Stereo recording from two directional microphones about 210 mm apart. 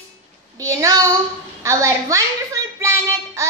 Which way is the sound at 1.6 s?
15° right (ahead or behind).